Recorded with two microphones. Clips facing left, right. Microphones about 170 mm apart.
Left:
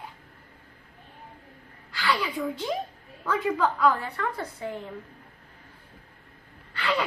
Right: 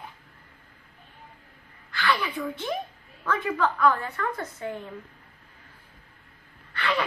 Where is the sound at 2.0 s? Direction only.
15° left (ahead or behind).